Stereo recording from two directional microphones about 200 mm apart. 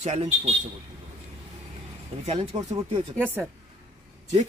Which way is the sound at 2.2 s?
30° right (ahead or behind).